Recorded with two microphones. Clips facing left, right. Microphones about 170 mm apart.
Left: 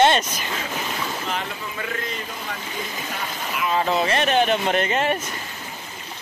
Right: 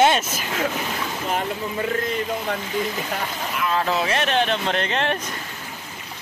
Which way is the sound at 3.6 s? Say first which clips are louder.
Left 1 dB; centre (ahead or behind).